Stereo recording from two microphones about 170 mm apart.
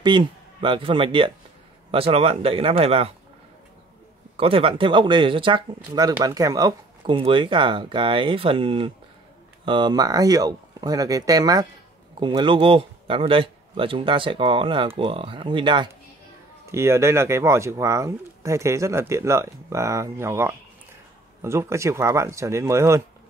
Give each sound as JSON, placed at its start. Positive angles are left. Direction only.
{"t": 0.0, "sound": "a man's voice", "side_deg": -25}
{"t": 4.4, "sound": "speech", "side_deg": -35}
{"t": 16.7, "sound": "speech", "side_deg": -15}